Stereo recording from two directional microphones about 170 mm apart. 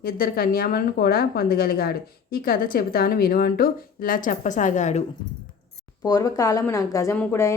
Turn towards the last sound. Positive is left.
turn(degrees=15)  # may be behind; listen again after turning